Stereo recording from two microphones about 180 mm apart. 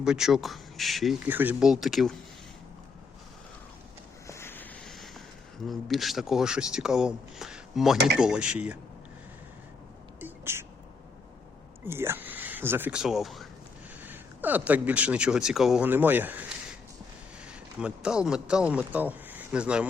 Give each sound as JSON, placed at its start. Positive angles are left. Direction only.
{"t": 0.0, "sound": "speech", "side_deg": -5}
{"t": 4.3, "sound": "a sound", "side_deg": 15}
{"t": 5.6, "sound": "speech", "side_deg": 0}
{"t": 7.9, "sound": "speech", "side_deg": -70}
{"t": 8.2, "sound": "speech", "side_deg": -5}
{"t": 10.2, "sound": "a sound", "side_deg": -10}
{"t": 11.9, "sound": "speech", "side_deg": -15}
{"t": 17.7, "sound": "speech", "side_deg": -5}